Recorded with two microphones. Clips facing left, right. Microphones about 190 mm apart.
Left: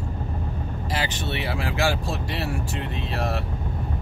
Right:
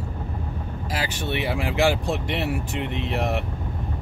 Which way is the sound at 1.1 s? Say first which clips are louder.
Right 2 dB; 15° right (ahead or behind).